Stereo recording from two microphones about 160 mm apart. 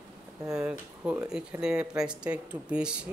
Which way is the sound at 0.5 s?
10° right (ahead or behind).